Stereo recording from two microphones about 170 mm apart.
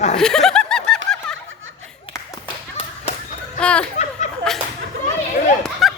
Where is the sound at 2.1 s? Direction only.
30° left (ahead or behind).